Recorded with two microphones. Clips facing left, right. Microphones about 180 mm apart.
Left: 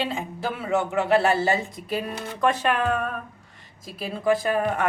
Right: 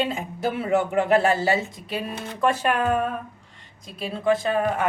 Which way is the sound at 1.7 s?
Centre (ahead or behind).